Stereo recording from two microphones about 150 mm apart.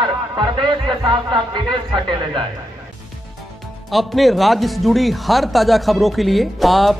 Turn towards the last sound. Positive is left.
turn(degrees=0)  # may be behind; listen again after turning